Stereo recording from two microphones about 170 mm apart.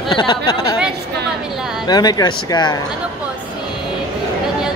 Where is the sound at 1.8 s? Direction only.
25° left (ahead or behind).